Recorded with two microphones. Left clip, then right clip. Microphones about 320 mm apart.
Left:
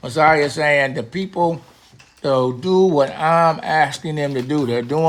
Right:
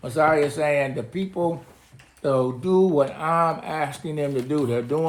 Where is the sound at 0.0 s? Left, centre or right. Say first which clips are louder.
Left 5 dB; left.